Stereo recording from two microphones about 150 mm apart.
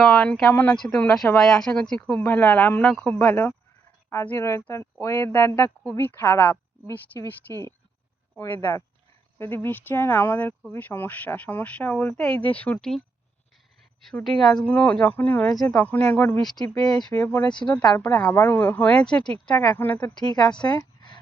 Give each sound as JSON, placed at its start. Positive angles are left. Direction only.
{"t": 0.0, "sound": "a woman's voice", "side_deg": 5}
{"t": 9.4, "sound": "speech", "side_deg": 15}
{"t": 14.3, "sound": "speech", "side_deg": 0}
{"t": 20.2, "sound": "a woman's voice", "side_deg": 25}
{"t": 20.7, "sound": "a sound", "side_deg": 30}